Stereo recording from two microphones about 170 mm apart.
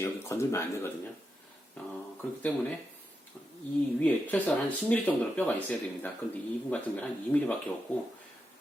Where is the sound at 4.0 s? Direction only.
10° left (ahead or behind).